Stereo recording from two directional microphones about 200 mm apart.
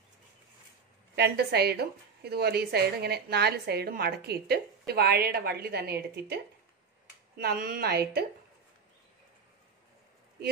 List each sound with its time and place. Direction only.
1.1 s a woman's voice: 55° right (ahead or behind)